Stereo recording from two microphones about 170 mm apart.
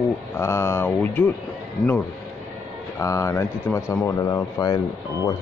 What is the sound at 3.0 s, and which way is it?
A man's voice, 15° left (ahead or behind).